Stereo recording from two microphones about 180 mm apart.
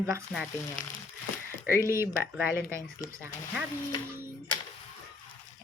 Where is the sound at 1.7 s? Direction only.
15° right (ahead or behind).